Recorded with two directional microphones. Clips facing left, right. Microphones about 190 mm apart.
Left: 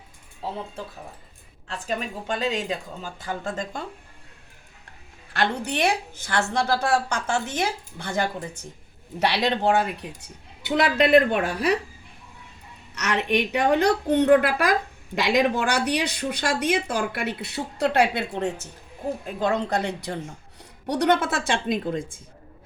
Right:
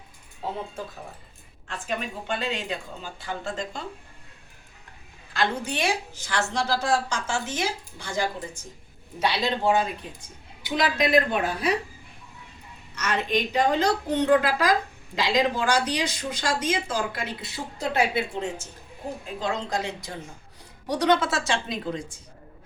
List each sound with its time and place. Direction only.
1.6 s speech: 40° left (ahead or behind)
5.3 s a woman's voice: 65° left (ahead or behind)
13.0 s a woman's voice: 70° left (ahead or behind); by 22.2 s 50° left (ahead or behind)